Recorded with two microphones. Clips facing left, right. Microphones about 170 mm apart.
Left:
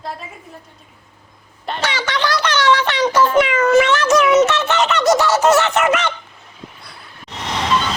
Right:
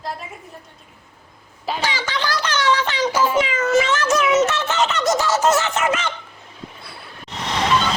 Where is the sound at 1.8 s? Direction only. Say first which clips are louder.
Left 5 dB; 75° left (ahead or behind).